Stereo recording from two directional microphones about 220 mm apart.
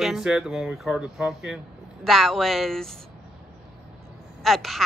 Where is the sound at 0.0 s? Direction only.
Centre (ahead or behind).